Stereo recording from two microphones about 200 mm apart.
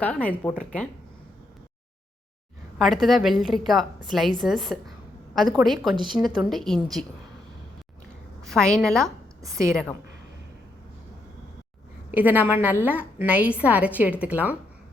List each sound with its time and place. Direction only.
0.0 s speech: 5° left (ahead or behind)
2.7 s a woman's voice: centre (ahead or behind)
8.4 s a woman's voice: 5° left (ahead or behind)
9.0 s a sound: 15° right (ahead or behind)
9.6 s a woman's voice: 5° left (ahead or behind)
12.1 s a woman's voice: 10° right (ahead or behind)